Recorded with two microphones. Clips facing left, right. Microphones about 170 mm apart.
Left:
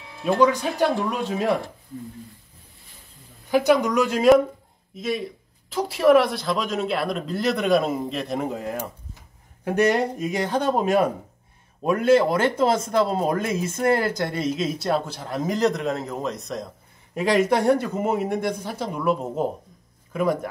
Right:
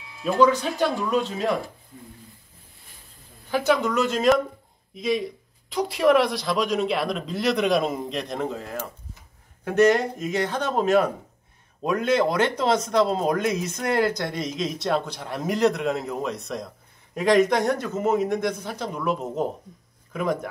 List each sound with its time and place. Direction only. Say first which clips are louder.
0.0 s music: even; 50° left (ahead or behind)
0.5 s speech: left 1 dB; 10° left (ahead or behind)
3.4 s speech: left 3 dB; 15° left (ahead or behind)